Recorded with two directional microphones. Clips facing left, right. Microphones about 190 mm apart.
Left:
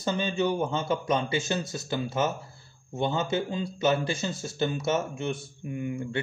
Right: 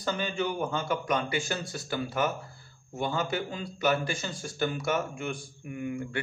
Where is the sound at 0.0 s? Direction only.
25° left (ahead or behind).